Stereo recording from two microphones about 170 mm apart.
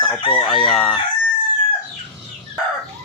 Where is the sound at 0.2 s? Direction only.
30° left (ahead or behind).